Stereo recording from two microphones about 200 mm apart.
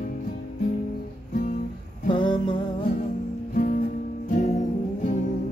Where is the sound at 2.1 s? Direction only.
25° left (ahead or behind).